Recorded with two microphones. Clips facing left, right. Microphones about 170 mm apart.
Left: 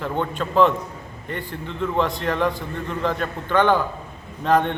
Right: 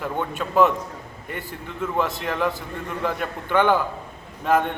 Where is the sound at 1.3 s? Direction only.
10° right (ahead or behind).